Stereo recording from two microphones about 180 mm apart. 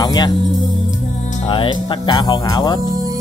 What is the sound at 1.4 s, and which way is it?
Speech, 25° left (ahead or behind).